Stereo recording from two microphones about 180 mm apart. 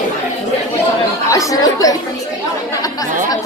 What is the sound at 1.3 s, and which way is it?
Speech, 20° left (ahead or behind).